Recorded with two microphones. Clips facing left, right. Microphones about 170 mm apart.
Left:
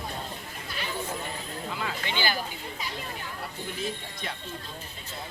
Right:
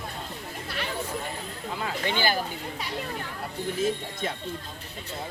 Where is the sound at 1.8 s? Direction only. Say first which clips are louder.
Right 4 dB; 45° right (ahead or behind).